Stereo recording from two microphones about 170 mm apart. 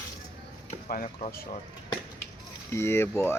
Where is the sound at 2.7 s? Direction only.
15° left (ahead or behind).